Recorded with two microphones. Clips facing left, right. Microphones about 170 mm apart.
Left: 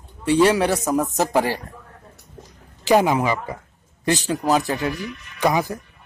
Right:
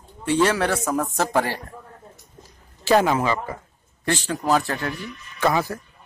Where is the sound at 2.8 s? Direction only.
15° left (ahead or behind).